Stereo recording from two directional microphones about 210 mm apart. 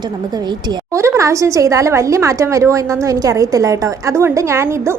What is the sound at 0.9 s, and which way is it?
A woman's voice, 15° right (ahead or behind).